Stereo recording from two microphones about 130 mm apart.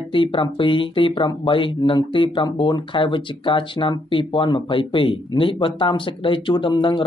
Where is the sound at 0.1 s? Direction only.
40° left (ahead or behind).